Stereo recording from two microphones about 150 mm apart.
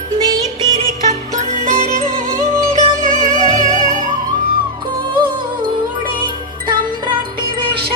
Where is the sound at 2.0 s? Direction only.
55° right (ahead or behind).